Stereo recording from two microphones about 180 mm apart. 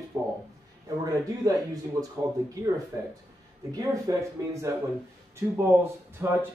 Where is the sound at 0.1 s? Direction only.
15° right (ahead or behind).